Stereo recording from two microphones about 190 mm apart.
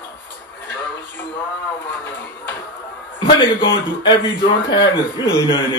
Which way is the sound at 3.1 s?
25° left (ahead or behind).